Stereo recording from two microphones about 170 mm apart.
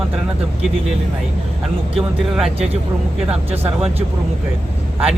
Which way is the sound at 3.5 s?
35° right (ahead or behind).